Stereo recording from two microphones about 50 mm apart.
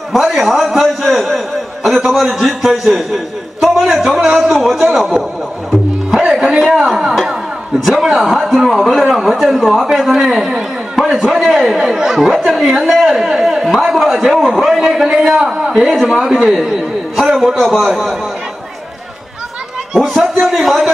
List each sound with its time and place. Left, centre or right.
0.1 s a man's voice: centre
3.9 s a sound: centre
4.3 s a man's voice: centre
5.7 s music: centre
6.2 s music: centre
7.8 s a man's voice: centre
11.3 s a man's voice: centre
20.3 s a man's voice: centre